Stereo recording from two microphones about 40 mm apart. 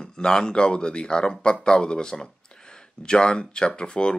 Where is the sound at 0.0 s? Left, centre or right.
Centre.